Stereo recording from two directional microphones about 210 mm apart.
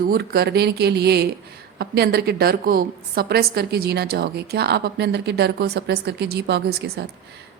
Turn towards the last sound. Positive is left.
turn(degrees=-55)  # may be behind; listen again after turning